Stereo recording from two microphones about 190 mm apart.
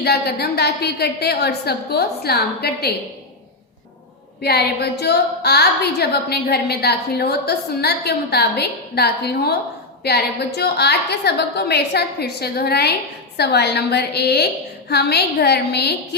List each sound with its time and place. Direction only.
0.0 s a woman's voice: 55° left (ahead or behind)
4.4 s a woman's voice: 60° left (ahead or behind)